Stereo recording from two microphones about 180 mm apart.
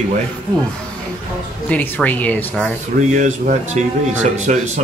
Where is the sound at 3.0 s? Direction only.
40° right (ahead or behind).